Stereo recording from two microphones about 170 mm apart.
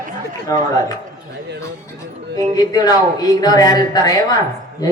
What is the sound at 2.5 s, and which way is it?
Speech, 20° left (ahead or behind).